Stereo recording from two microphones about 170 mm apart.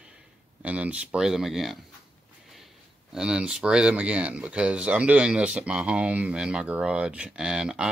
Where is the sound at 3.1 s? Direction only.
5° right (ahead or behind).